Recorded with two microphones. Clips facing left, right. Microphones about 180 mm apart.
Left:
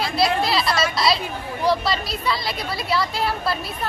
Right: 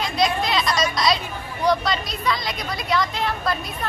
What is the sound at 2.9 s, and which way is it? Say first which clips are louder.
Speech: even; 5° left (ahead or behind).